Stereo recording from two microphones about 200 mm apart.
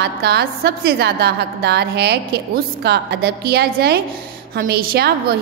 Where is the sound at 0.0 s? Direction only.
55° right (ahead or behind).